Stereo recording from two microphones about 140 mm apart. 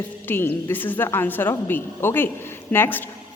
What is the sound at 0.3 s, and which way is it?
A woman's voice, 15° left (ahead or behind).